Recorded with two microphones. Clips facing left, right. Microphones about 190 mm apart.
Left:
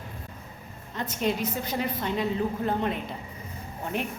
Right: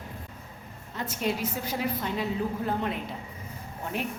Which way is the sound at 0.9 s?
5° right (ahead or behind).